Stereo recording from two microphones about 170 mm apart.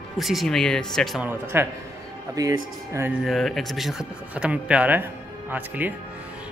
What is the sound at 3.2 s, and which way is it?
Speech, centre (ahead or behind).